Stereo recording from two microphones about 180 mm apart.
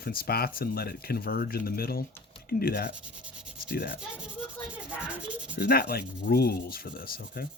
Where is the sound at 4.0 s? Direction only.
5° right (ahead or behind).